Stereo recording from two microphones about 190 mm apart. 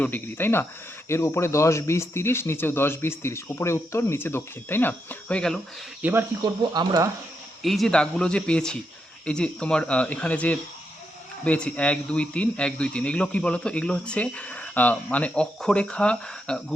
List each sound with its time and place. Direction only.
0.0 s speech: 10° left (ahead or behind)
6.0 s speech: 10° right (ahead or behind)
7.6 s speech: centre (ahead or behind)